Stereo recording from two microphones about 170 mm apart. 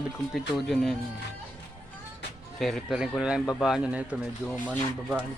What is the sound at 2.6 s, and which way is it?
Speech, centre (ahead or behind).